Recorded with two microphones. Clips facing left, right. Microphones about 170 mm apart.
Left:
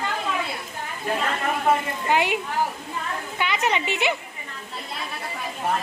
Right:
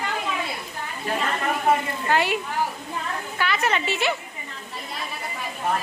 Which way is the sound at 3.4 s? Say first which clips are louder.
Even; 20° left (ahead or behind).